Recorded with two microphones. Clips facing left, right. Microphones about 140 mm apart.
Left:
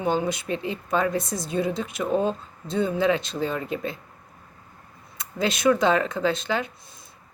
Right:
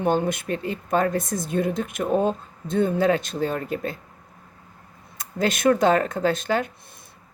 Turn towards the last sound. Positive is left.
turn(degrees=-45)  # may be behind; listen again after turning